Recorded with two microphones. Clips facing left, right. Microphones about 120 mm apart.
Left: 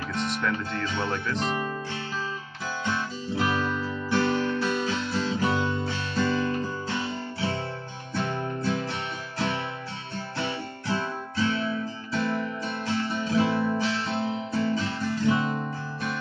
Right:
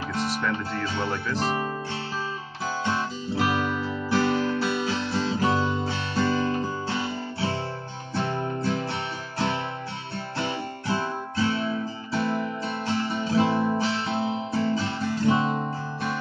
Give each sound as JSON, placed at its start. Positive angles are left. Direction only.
{"t": 0.4, "sound": "speech", "side_deg": -5}
{"t": 1.4, "sound": "speech", "side_deg": -35}
{"t": 2.6, "sound": "guitar", "side_deg": -35}
{"t": 3.5, "sound": "music", "side_deg": -20}
{"t": 4.1, "sound": "guitar", "side_deg": -35}
{"t": 8.2, "sound": "music", "side_deg": -30}
{"t": 10.4, "sound": "guitar", "side_deg": -30}